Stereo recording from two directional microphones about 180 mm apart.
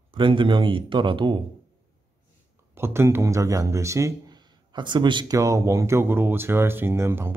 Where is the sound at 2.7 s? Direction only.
15° right (ahead or behind).